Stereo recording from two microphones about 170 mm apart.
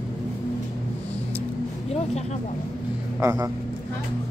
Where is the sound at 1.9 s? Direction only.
40° left (ahead or behind).